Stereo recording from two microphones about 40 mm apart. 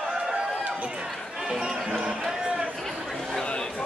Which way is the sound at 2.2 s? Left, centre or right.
Centre.